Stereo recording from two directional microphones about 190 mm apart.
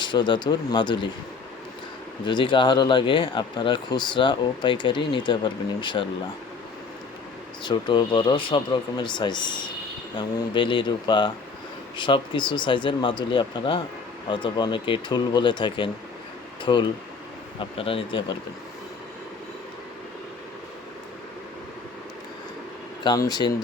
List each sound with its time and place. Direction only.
0.0 s speech: 25° left (ahead or behind)
2.2 s speech: 25° left (ahead or behind)
7.6 s speech: 25° left (ahead or behind)
23.0 s speech: 20° left (ahead or behind)